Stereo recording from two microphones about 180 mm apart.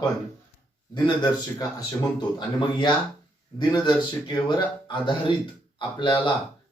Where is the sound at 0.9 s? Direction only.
25° left (ahead or behind).